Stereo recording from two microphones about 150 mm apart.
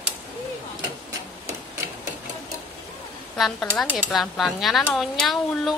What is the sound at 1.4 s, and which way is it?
Hammer, 15° right (ahead or behind).